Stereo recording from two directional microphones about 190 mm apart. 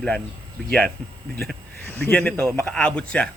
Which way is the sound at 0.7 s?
5° left (ahead or behind).